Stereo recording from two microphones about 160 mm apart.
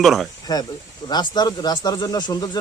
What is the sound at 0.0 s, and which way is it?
Speech, centre (ahead or behind).